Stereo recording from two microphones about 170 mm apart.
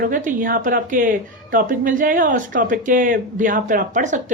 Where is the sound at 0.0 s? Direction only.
55° right (ahead or behind).